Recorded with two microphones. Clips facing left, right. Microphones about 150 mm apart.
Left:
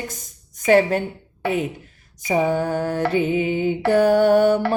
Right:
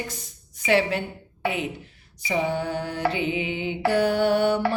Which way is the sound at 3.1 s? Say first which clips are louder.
Left 7 dB; 45° left (ahead or behind).